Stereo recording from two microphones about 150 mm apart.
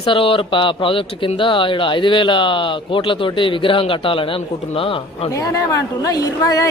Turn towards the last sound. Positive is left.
turn(degrees=25)  # may be behind; listen again after turning